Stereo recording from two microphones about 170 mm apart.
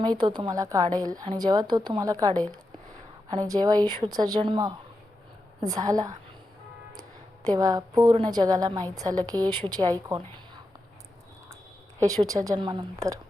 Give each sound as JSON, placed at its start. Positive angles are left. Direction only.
{"t": 0.3, "sound": "a woman's voice", "side_deg": -25}
{"t": 7.4, "sound": "a woman's voice", "side_deg": -20}
{"t": 11.9, "sound": "a woman's voice", "side_deg": -20}